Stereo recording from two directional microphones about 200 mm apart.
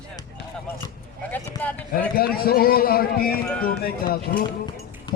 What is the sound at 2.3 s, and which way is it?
Speech, 50° left (ahead or behind).